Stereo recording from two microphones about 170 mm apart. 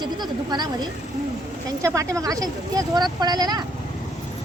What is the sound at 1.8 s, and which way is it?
A woman's voice, 15° right (ahead or behind).